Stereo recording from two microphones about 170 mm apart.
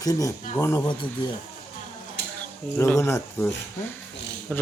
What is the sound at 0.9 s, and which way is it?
Speech, 30° left (ahead or behind).